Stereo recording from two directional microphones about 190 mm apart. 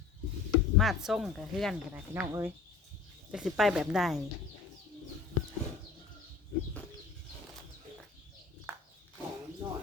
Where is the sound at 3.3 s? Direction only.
5° right (ahead or behind).